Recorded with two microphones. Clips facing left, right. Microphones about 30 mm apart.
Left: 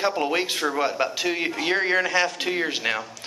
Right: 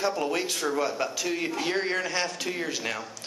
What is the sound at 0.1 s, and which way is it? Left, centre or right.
Speech, left.